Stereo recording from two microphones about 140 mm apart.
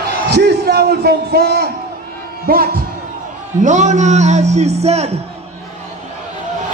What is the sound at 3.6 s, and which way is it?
A man's voice, 60° right (ahead or behind).